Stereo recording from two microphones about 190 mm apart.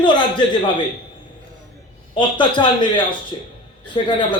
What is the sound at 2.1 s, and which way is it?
A man's voice, 25° left (ahead or behind).